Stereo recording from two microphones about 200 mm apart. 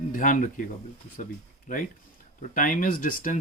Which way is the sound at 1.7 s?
40° left (ahead or behind).